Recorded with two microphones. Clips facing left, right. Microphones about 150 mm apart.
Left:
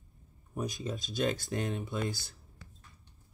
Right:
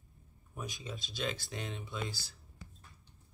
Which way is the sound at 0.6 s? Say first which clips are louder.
Left 7 dB; 45° left (ahead or behind).